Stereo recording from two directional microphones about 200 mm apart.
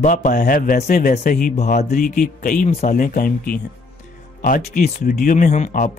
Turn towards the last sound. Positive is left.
turn(degrees=40)  # may be behind; listen again after turning